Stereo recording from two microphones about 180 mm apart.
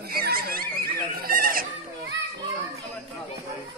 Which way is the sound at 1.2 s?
50° right (ahead or behind).